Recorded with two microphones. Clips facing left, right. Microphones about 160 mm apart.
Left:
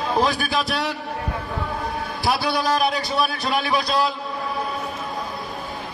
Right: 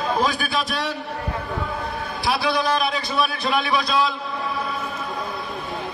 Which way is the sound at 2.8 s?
40° left (ahead or behind).